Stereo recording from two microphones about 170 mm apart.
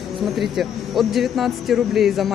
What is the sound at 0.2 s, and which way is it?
Speech, centre (ahead or behind).